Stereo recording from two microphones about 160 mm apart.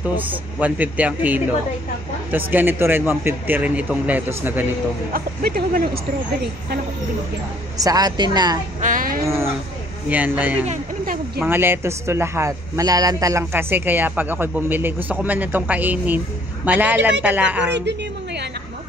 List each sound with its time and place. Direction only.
0.0 s a man's voice: 10° right (ahead or behind)
5.1 s speech: 65° right (ahead or behind)
7.7 s a woman's voice: 20° right (ahead or behind)
8.8 s a sound: 60° right (ahead or behind)
9.2 s a man's voice: 15° right (ahead or behind)
17.7 s a sound: 90° right